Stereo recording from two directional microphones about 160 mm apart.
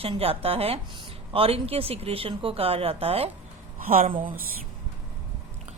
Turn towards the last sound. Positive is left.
turn(degrees=-60)  # may be behind; listen again after turning